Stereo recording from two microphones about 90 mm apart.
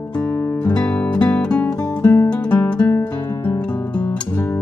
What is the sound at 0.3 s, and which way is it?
Guitar, 25° left (ahead or behind).